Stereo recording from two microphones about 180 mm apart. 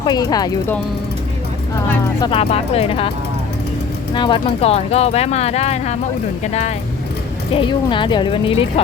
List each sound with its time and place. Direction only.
0.0 s speech: 20° left (ahead or behind)
2.2 s speech: 35° left (ahead or behind)
4.1 s speech: 25° left (ahead or behind)
7.5 s speech: 25° left (ahead or behind)